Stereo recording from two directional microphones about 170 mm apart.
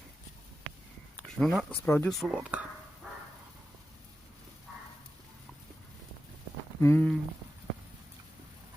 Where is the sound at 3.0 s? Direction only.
5° right (ahead or behind).